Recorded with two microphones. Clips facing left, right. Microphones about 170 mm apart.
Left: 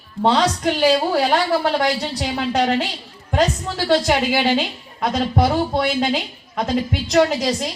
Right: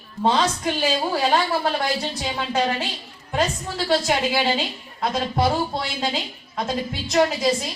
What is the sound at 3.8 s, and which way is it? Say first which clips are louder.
Speech: left 4 dB; 65° left (ahead or behind).